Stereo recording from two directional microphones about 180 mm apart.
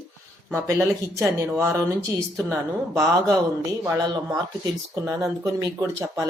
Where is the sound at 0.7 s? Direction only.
15° right (ahead or behind).